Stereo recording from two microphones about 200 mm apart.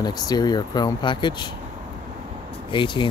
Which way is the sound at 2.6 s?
25° left (ahead or behind).